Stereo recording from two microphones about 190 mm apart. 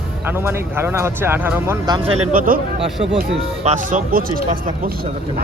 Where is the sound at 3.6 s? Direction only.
45° right (ahead or behind).